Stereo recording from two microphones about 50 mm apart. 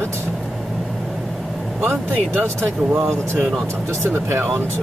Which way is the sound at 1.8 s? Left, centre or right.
Right.